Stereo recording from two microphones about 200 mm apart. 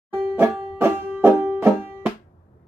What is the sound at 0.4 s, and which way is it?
Music, 10° right (ahead or behind).